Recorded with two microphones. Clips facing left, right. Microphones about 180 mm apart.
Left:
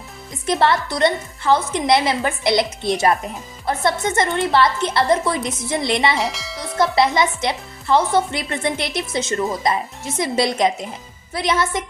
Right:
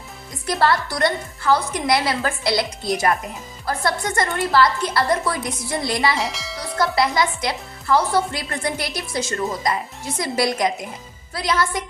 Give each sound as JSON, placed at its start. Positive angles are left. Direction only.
{"t": 0.4, "sound": "a woman's voice", "side_deg": 25}
{"t": 6.1, "sound": "speech", "side_deg": 0}
{"t": 6.9, "sound": "a woman's voice", "side_deg": 25}